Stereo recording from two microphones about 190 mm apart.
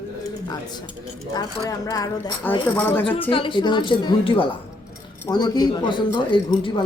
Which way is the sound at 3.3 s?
25° left (ahead or behind).